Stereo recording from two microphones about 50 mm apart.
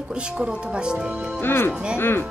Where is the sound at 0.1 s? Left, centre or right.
Right.